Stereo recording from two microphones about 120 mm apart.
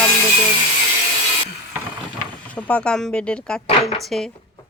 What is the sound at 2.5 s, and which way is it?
Speech, 10° left (ahead or behind).